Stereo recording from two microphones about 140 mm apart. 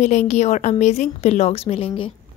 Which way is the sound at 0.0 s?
55° left (ahead or behind).